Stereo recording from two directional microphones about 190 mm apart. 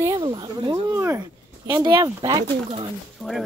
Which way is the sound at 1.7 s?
20° right (ahead or behind).